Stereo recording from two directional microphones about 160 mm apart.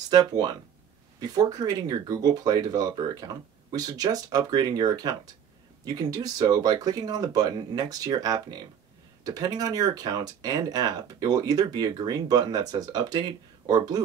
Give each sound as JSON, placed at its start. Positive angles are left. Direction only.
{"t": 0.1, "sound": "speech", "side_deg": -25}